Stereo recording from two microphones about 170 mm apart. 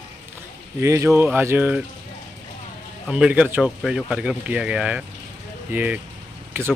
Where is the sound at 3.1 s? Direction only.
10° right (ahead or behind).